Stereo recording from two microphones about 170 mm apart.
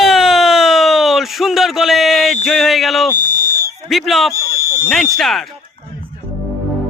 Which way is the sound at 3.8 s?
Centre (ahead or behind).